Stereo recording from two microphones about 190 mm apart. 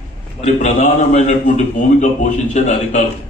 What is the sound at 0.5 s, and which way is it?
A man's voice, 35° left (ahead or behind).